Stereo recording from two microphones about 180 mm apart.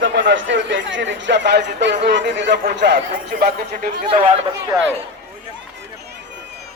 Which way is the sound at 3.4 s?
50° right (ahead or behind).